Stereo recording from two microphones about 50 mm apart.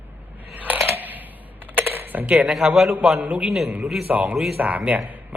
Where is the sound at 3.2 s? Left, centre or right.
Right.